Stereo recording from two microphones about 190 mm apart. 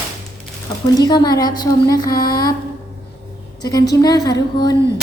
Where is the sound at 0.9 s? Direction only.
20° left (ahead or behind).